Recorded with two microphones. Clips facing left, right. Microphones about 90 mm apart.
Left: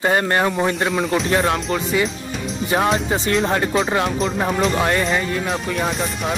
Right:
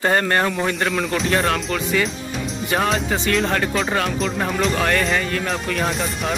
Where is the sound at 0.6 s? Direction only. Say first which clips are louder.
Left 2 dB; 5° left (ahead or behind).